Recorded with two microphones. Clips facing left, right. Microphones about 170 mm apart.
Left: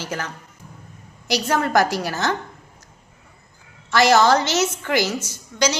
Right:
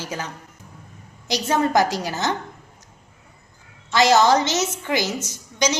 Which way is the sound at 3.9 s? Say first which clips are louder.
Even; 20° right (ahead or behind).